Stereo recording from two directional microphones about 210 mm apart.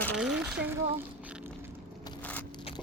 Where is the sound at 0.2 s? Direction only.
5° right (ahead or behind).